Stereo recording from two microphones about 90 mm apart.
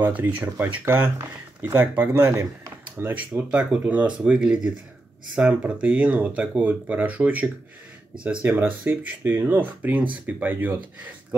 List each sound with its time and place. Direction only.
0.0 s speech: 20° right (ahead or behind)